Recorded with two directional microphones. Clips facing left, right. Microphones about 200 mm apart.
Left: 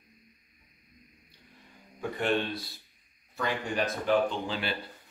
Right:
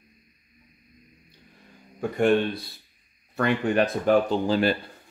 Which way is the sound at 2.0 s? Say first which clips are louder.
Right 8 dB; 50° right (ahead or behind).